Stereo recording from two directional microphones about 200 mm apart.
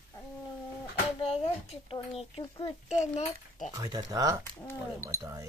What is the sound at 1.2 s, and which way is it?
Speech, 30° left (ahead or behind).